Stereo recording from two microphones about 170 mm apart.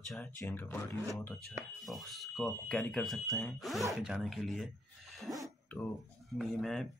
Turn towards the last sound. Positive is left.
turn(degrees=0)  # may be behind; listen again after turning